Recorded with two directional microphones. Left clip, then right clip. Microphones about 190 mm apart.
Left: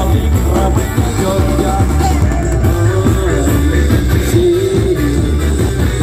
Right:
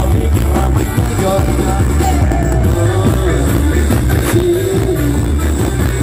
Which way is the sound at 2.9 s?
50° right (ahead or behind).